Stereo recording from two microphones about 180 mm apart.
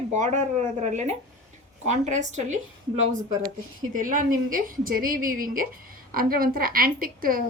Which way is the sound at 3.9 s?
50° right (ahead or behind).